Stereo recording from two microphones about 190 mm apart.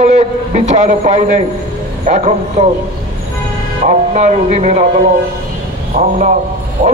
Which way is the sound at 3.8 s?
40° right (ahead or behind).